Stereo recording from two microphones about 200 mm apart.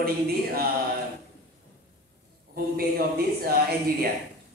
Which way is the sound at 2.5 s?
50° right (ahead or behind).